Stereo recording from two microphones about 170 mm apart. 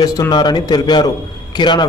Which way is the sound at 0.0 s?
20° left (ahead or behind).